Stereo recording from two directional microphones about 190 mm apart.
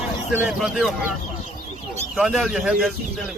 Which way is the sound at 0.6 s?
Centre (ahead or behind).